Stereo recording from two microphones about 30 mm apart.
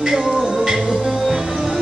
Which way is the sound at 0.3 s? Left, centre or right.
Centre.